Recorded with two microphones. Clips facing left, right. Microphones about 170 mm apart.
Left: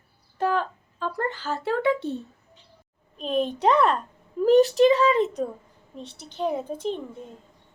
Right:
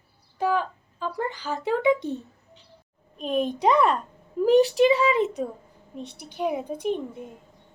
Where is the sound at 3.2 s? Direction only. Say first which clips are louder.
Even; 10° right (ahead or behind).